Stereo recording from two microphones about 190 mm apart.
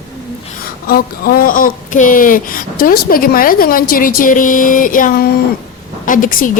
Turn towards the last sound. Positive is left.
turn(degrees=45)  # may be behind; listen again after turning